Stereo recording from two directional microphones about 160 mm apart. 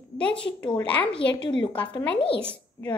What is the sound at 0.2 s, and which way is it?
A child's voice, 5° left (ahead or behind).